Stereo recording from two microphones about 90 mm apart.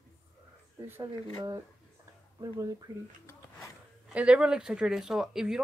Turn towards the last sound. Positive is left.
turn(degrees=-5)  # may be behind; listen again after turning